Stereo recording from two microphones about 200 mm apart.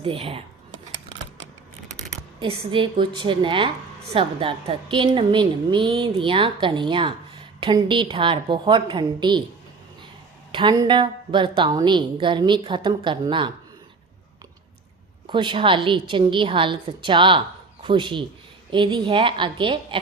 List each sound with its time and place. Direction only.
0.0 s a woman's voice: 25° right (ahead or behind)
2.4 s a woman's voice: 25° right (ahead or behind)
10.5 s a woman's voice: 25° right (ahead or behind)
15.3 s a woman's voice: 25° right (ahead or behind)